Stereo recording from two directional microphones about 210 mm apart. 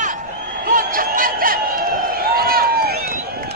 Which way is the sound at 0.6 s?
40° right (ahead or behind).